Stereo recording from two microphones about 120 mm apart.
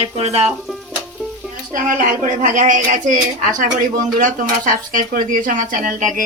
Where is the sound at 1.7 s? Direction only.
90° right.